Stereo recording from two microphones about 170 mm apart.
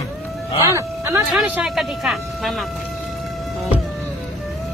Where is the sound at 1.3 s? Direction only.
Centre (ahead or behind).